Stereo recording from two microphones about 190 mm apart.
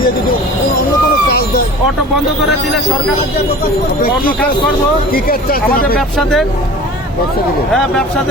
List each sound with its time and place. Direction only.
5.1 s speech: 50° left (ahead or behind)
6.0 s speech: centre (ahead or behind)
7.7 s speech: 5° left (ahead or behind)